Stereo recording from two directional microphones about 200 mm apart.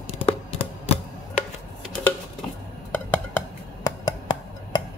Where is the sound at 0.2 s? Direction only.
30° left (ahead or behind).